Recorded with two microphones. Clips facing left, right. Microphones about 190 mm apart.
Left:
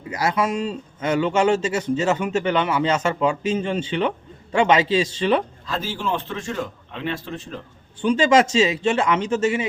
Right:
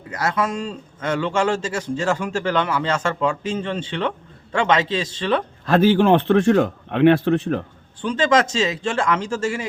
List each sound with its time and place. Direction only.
0.1 s a man's voice: 10° left (ahead or behind)
5.6 s speech: 60° right (ahead or behind)
8.0 s a man's voice: 10° left (ahead or behind)